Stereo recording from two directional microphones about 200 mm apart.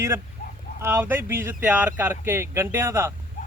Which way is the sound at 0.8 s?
10° right (ahead or behind).